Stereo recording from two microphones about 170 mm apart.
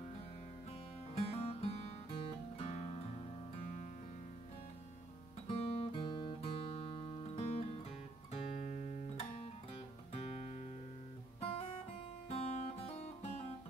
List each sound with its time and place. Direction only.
1.1 s music: 35° left (ahead or behind)
5.5 s guitar: 35° left (ahead or behind)
8.3 s music: 35° left (ahead or behind)
10.1 s music: 40° left (ahead or behind)
12.3 s music: 35° left (ahead or behind)